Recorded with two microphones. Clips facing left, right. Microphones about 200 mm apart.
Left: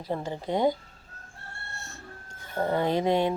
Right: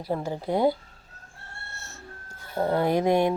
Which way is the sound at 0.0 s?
10° right (ahead or behind).